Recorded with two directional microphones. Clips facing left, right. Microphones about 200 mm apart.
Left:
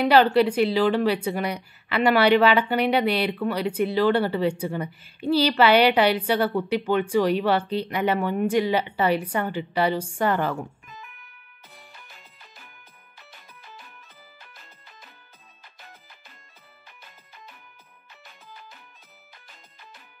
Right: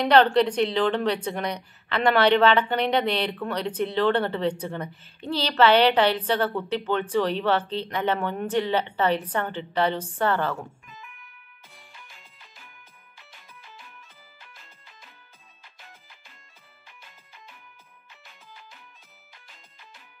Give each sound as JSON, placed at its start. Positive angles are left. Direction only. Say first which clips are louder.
{"t": 0.0, "sound": "speech", "louder": "left 1 dB", "side_deg": 5}
{"t": 11.0, "sound": "music", "louder": "left 1 dB", "side_deg": 40}
{"t": 18.2, "sound": "music", "louder": "left 3 dB", "side_deg": 40}